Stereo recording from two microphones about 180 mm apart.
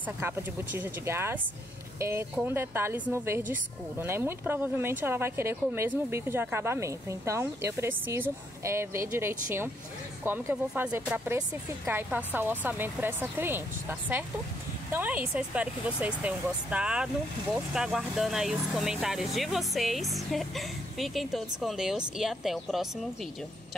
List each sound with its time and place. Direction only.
0.2 s speech: 10° right (ahead or behind)